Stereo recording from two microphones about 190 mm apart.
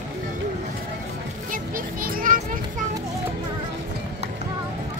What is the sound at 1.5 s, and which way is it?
Children playing, 45° right (ahead or behind).